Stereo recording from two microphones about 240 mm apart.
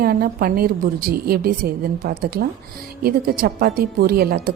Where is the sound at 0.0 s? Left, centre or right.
Right.